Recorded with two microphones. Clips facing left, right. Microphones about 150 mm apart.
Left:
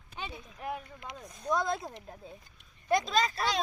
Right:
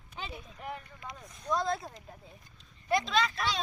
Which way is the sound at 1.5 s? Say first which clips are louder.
Left 1 dB; 20° left (ahead or behind).